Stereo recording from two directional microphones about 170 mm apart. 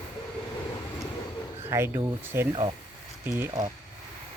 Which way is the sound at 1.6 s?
15° right (ahead or behind).